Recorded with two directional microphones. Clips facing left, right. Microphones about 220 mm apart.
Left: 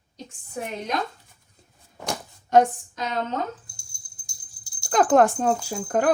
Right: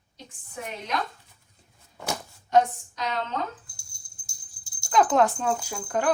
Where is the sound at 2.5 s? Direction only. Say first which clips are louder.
Left 3 dB; 50° left (ahead or behind).